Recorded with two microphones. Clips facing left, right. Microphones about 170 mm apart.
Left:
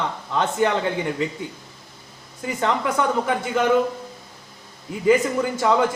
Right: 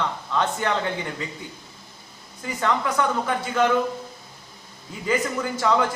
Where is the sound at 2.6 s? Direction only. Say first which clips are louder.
Left 1 dB; 20° left (ahead or behind).